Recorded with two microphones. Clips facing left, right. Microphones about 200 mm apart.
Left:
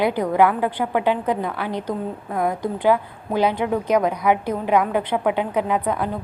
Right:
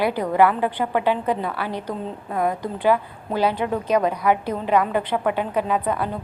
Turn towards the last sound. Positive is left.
turn(degrees=15)  # may be behind; listen again after turning